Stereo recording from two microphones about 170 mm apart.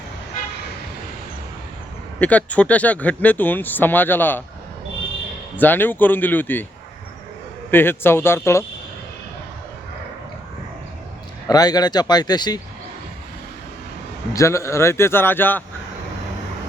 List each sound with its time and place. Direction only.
2.1 s speech: 10° left (ahead or behind)
5.5 s speech: 10° left (ahead or behind)
7.7 s speech: 10° left (ahead or behind)
11.4 s speech: 20° left (ahead or behind)
14.3 s speech: 15° left (ahead or behind)